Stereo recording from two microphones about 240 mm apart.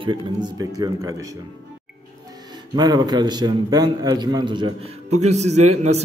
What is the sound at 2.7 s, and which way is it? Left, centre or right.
A man's voice, centre.